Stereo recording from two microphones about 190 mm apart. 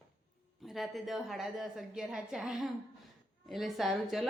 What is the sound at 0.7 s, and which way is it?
A woman's voice, centre (ahead or behind).